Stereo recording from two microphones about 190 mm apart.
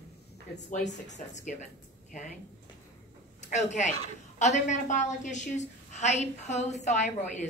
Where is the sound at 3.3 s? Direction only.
40° left (ahead or behind).